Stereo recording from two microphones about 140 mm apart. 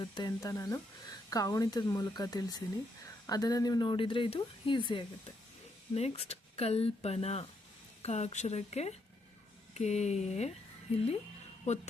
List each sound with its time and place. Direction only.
0.0 s speech: 30° left (ahead or behind)
5.9 s speech: 50° left (ahead or behind)
11.7 s speech: 55° left (ahead or behind)